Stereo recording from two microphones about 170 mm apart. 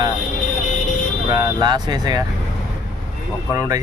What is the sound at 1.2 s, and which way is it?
Speech, 25° right (ahead or behind).